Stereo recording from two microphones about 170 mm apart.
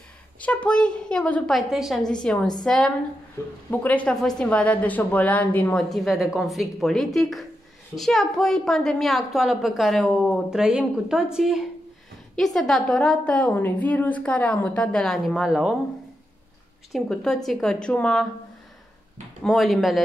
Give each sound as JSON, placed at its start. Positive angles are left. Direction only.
{"t": 0.4, "sound": "a woman's voice", "side_deg": 5}
{"t": 16.9, "sound": "a woman's voice", "side_deg": 5}
{"t": 19.4, "sound": "a woman's voice", "side_deg": 0}